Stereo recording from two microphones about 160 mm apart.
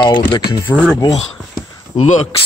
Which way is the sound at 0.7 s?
5° left (ahead or behind).